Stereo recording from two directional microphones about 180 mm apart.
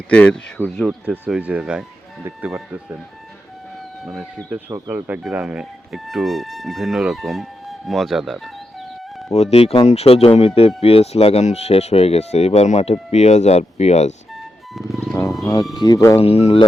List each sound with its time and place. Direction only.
0.1 s speech: 5° left (ahead or behind)
1.0 s speech: 10° right (ahead or behind)
4.0 s speech: centre (ahead or behind)
4.4 s speech: 10° right (ahead or behind)
9.3 s speech: 35° left (ahead or behind)
14.7 s speech: centre (ahead or behind)
15.1 s music: 15° left (ahead or behind)
15.7 s speech: 25° left (ahead or behind)
16.2 s speech: 35° left (ahead or behind)